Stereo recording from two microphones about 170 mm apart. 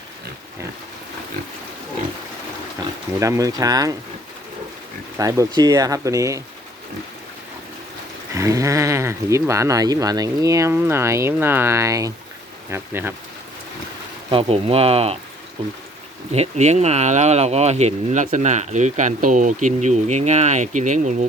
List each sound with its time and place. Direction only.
3.2 s speech: 20° right (ahead or behind)
5.1 s speech: 20° right (ahead or behind)
8.4 s speech: 20° right (ahead or behind)
14.3 s speech: 35° right (ahead or behind)